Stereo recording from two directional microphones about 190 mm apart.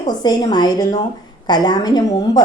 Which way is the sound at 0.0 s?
20° left (ahead or behind).